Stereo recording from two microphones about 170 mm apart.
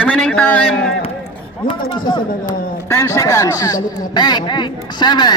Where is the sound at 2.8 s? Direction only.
15° left (ahead or behind).